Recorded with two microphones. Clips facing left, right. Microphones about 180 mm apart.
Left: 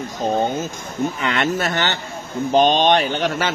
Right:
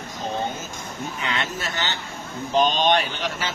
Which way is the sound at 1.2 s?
65° left (ahead or behind).